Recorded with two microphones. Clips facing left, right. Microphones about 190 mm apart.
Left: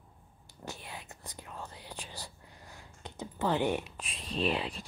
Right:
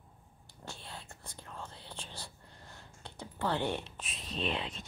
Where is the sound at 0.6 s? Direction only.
20° left (ahead or behind).